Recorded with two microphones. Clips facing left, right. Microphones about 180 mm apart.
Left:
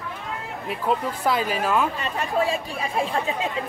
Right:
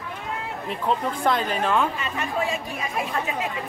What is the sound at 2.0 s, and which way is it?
Speech, 35° left (ahead or behind).